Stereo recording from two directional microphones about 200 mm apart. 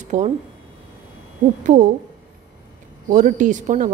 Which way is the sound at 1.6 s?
40° right (ahead or behind).